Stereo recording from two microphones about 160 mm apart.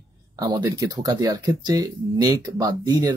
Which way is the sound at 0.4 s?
25° right (ahead or behind).